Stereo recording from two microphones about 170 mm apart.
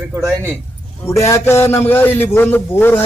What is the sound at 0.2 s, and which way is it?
Speech, 15° right (ahead or behind).